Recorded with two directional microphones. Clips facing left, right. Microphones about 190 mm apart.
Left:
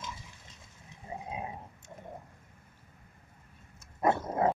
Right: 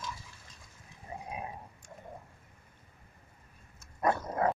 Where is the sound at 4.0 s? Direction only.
25° left (ahead or behind).